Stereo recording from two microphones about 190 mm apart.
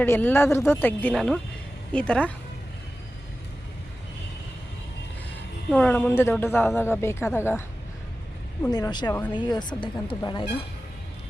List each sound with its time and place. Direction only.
0.0 s speech: 10° left (ahead or behind)
5.7 s speech: 5° left (ahead or behind)
8.6 s a woman's voice: 20° left (ahead or behind)